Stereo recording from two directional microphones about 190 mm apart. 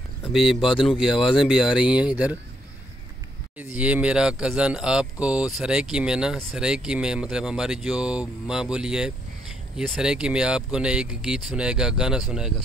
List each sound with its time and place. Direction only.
0.3 s speech: centre (ahead or behind)
3.7 s speech: 5° right (ahead or behind)